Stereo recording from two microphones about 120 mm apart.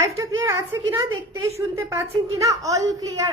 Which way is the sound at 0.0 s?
25° right (ahead or behind).